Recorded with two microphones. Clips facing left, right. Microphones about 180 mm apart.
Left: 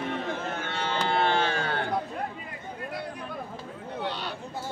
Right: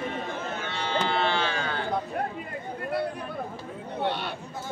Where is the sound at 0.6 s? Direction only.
55° left (ahead or behind).